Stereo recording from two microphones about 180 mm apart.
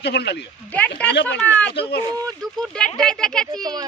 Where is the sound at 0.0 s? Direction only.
65° left (ahead or behind).